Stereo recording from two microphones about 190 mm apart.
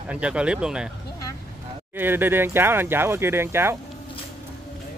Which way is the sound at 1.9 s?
10° right (ahead or behind).